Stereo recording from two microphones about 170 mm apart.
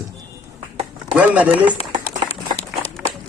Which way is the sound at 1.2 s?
10° right (ahead or behind).